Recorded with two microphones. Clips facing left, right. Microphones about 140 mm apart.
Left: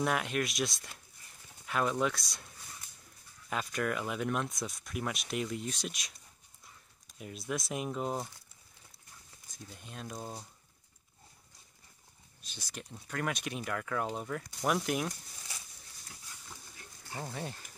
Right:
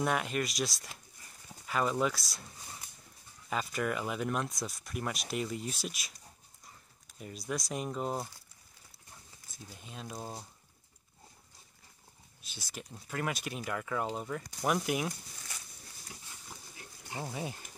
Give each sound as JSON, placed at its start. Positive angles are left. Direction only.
{"t": 0.0, "sound": "speech", "side_deg": 0}
{"t": 3.4, "sound": "speech", "side_deg": 0}
{"t": 7.2, "sound": "speech", "side_deg": 0}
{"t": 9.7, "sound": "speech", "side_deg": 0}
{"t": 12.4, "sound": "speech", "side_deg": -10}
{"t": 17.0, "sound": "speech", "side_deg": -10}